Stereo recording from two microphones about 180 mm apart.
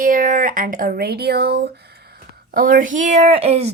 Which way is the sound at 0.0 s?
50° right (ahead or behind).